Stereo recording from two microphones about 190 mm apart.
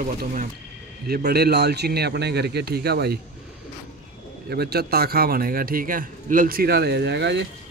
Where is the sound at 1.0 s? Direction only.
55° right (ahead or behind).